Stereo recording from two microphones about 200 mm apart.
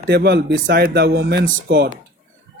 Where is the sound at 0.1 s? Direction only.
55° right (ahead or behind).